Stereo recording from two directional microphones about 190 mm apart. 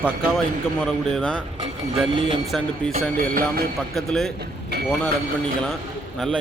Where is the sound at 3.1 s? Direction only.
50° right (ahead or behind).